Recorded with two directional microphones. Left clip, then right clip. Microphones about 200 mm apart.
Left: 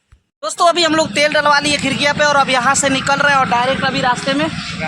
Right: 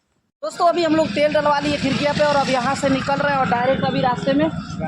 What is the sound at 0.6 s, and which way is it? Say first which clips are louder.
Speech: left 4 dB; 10° left (ahead or behind).